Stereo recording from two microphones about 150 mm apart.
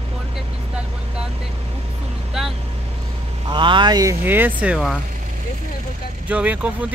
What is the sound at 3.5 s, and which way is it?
Speech, 30° right (ahead or behind).